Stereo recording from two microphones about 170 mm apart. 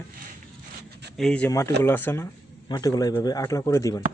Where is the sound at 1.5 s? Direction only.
15° left (ahead or behind).